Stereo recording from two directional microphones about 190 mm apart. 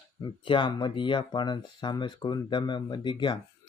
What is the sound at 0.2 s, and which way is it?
Speech, 25° left (ahead or behind).